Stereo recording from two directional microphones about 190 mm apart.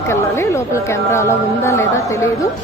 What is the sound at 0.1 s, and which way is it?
A woman's voice, 15° left (ahead or behind).